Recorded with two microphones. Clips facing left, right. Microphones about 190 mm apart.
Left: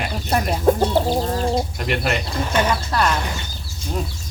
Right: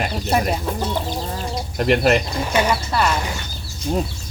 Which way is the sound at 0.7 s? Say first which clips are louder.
Left 10 dB; 50° left (ahead or behind).